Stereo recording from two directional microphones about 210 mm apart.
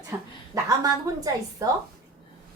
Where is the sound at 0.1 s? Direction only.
15° right (ahead or behind).